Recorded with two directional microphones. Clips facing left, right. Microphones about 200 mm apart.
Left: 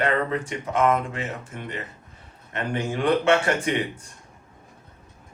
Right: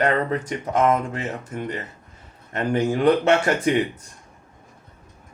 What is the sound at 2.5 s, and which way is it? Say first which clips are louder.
Speech: right 6 dB; 40° right (ahead or behind).